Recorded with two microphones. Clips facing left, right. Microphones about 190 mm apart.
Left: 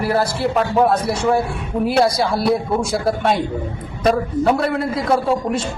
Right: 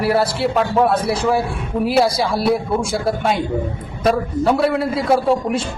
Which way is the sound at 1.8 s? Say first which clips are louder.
Even; centre (ahead or behind).